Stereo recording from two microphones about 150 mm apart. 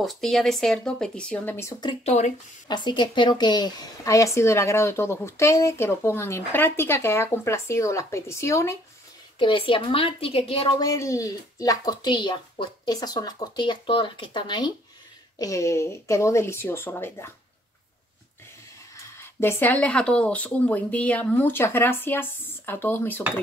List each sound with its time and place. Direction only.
0.0 s speech: centre (ahead or behind)
2.0 s speech: 50° left (ahead or behind)
2.7 s speech: 30° left (ahead or behind)
9.4 s a woman's voice: 35° left (ahead or behind)
10.8 s speech: 20° left (ahead or behind)
18.9 s speech: 15° left (ahead or behind)